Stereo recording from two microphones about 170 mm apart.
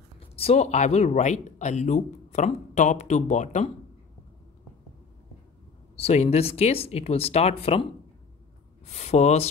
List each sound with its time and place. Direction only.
0.4 s speech: 40° left (ahead or behind)
5.9 s speech: 40° left (ahead or behind)
8.8 s speech: 40° left (ahead or behind)